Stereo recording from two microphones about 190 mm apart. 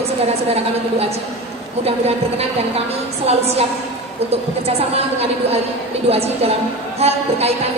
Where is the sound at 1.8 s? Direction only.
35° right (ahead or behind).